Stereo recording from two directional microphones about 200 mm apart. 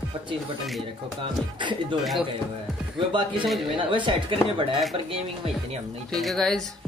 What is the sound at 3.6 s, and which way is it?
Speech, 25° right (ahead or behind).